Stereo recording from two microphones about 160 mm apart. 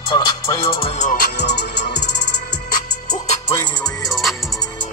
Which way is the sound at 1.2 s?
90° left.